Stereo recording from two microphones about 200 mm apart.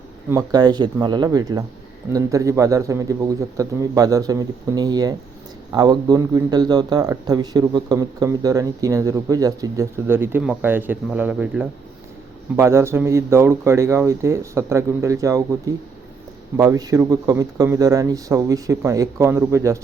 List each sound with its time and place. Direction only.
0.3 s a man's voice: 20° right (ahead or behind)